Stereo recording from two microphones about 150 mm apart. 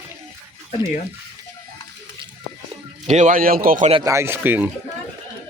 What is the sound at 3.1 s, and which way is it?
Speech, 55° right (ahead or behind).